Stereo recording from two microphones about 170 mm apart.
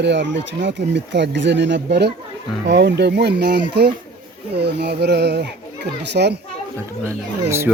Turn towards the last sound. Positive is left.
turn(degrees=-15)  # may be behind; listen again after turning